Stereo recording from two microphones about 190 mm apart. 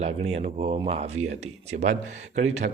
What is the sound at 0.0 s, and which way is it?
Speech, 35° right (ahead or behind).